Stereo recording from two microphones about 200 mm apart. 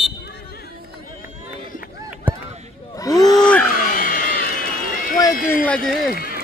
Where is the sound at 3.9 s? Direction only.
45° left (ahead or behind).